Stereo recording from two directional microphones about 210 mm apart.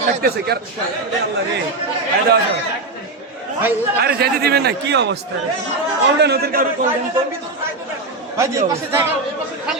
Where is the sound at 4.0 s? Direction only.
50° right (ahead or behind).